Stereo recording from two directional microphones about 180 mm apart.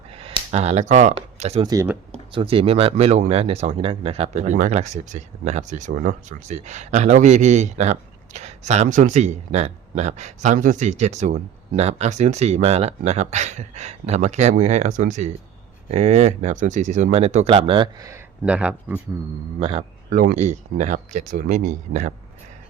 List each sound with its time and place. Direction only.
0.1 s speech: 30° right (ahead or behind)
1.6 s speech: 15° right (ahead or behind)
2.1 s speech: 30° right (ahead or behind)
18.1 s speech: 5° right (ahead or behind)
19.5 s a man's voice: 30° right (ahead or behind)
20.1 s speech: 45° right (ahead or behind)